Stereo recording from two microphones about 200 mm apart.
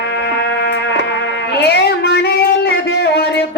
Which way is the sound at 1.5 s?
55° left (ahead or behind).